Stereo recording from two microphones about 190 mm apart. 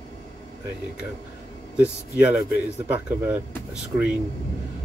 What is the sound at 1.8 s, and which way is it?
Speech, 5° right (ahead or behind).